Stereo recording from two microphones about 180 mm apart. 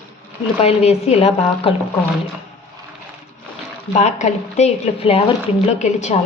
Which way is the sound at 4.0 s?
40° left (ahead or behind).